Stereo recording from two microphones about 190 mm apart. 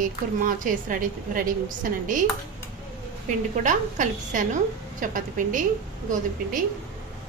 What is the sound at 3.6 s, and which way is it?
Speech, 45° right (ahead or behind).